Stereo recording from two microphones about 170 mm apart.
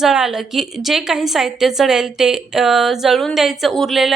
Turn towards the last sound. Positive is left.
turn(degrees=0)  # may be behind; listen again after turning